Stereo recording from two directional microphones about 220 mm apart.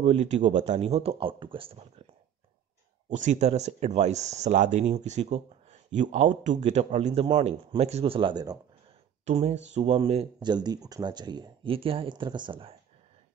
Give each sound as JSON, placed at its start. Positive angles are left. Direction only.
{"t": 0.0, "sound": "speech", "side_deg": -30}
{"t": 3.1, "sound": "speech", "side_deg": -35}